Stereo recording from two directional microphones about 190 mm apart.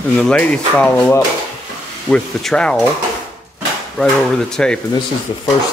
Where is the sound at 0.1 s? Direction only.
5° left (ahead or behind).